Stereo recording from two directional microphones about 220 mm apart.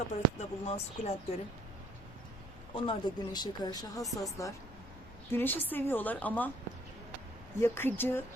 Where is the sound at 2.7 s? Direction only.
25° left (ahead or behind); by 6.5 s 5° left (ahead or behind).